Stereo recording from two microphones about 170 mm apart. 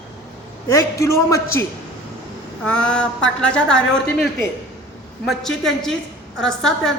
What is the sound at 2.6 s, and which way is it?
A man's voice, 5° left (ahead or behind).